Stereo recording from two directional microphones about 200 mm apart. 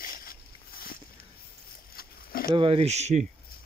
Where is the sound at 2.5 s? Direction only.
25° right (ahead or behind).